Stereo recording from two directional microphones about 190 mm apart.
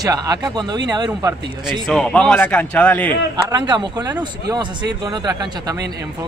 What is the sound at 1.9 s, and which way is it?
Speech, 5° left (ahead or behind).